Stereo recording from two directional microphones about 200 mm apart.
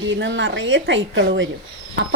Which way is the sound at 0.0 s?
65° right (ahead or behind).